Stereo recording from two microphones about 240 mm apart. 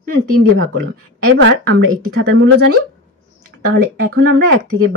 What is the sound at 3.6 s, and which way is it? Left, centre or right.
Speech, right.